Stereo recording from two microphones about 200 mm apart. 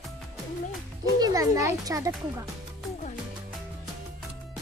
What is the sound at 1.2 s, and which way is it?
Speech, 15° right (ahead or behind).